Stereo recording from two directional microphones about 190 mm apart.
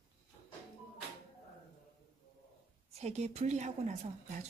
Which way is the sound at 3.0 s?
35° right (ahead or behind).